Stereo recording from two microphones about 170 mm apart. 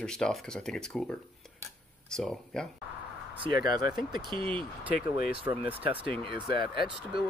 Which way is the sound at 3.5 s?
65° left (ahead or behind).